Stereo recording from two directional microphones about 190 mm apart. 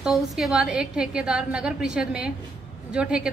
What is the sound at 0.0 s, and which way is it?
A woman's voice, centre (ahead or behind).